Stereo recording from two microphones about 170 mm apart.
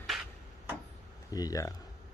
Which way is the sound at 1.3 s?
20° left (ahead or behind).